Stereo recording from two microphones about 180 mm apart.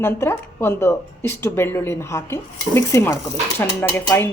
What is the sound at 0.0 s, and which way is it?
Speech, 15° left (ahead or behind).